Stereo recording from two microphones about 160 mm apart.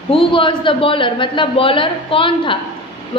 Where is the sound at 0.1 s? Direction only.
35° left (ahead or behind).